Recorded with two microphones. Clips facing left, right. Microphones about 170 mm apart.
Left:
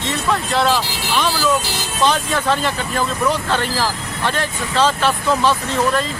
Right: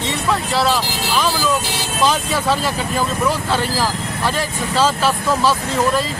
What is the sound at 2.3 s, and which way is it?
Speech, 5° right (ahead or behind).